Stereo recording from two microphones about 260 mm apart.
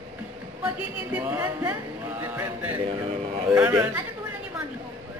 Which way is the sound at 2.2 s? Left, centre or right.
Centre.